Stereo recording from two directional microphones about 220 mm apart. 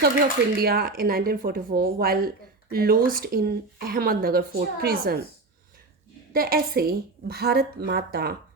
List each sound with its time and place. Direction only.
0.5 s speech: 45° right (ahead or behind)
6.3 s speech: 40° right (ahead or behind)